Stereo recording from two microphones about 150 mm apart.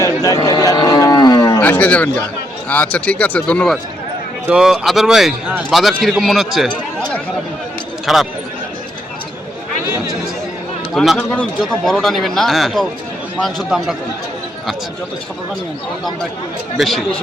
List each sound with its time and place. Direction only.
0.0 s cattle: 25° left (ahead or behind)
1.6 s speech: 10° left (ahead or behind)
4.4 s a man's voice: 5° right (ahead or behind)
10.9 s a man's voice: centre (ahead or behind)
16.7 s a man's voice: centre (ahead or behind)